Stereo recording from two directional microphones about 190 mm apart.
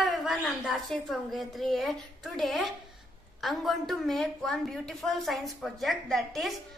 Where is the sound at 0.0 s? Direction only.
Centre (ahead or behind).